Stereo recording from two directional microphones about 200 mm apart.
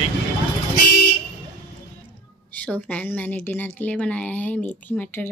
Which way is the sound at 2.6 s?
5° left (ahead or behind).